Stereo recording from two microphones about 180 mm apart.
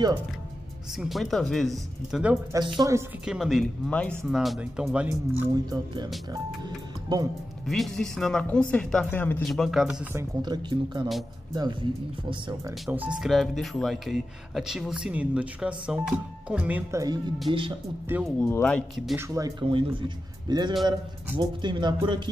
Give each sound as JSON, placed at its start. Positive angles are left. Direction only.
{"t": 0.9, "sound": "speech", "side_deg": 0}
{"t": 2.5, "sound": "speech", "side_deg": -25}
{"t": 3.3, "sound": "speech", "side_deg": 0}
{"t": 5.1, "sound": "speech", "side_deg": -20}
{"t": 7.1, "sound": "speech", "side_deg": -25}
{"t": 7.6, "sound": "speech", "side_deg": 0}
{"t": 10.1, "sound": "speech", "side_deg": -25}
{"t": 12.8, "sound": "speech", "side_deg": -5}
{"t": 17.5, "sound": "speech", "side_deg": -25}
{"t": 18.4, "sound": "speech", "side_deg": 5}
{"t": 19.1, "sound": "speech", "side_deg": -15}
{"t": 19.6, "sound": "speech", "side_deg": -30}